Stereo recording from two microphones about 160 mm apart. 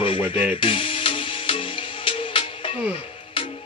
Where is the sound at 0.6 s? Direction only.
35° left (ahead or behind).